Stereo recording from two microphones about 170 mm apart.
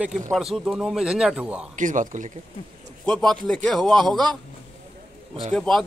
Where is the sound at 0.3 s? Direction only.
Centre (ahead or behind).